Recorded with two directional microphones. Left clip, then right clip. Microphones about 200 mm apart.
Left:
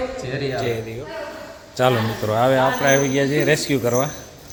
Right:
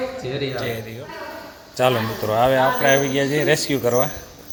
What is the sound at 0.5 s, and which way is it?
A man's voice, 20° left (ahead or behind).